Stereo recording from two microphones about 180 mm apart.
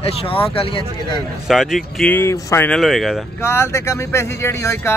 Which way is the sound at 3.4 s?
15° left (ahead or behind).